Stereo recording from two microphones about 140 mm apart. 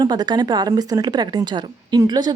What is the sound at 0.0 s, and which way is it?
A woman's voice, 30° right (ahead or behind).